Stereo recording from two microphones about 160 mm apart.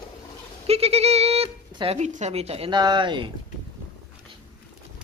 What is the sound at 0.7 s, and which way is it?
Speech, 40° right (ahead or behind).